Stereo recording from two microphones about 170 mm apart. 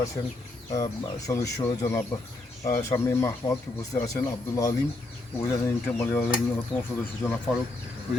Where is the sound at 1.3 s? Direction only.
15° left (ahead or behind).